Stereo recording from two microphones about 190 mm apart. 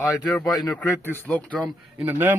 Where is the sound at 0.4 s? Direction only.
20° left (ahead or behind).